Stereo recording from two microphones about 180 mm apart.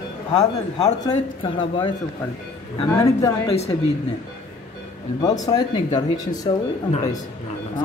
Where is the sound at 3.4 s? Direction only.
35° left (ahead or behind).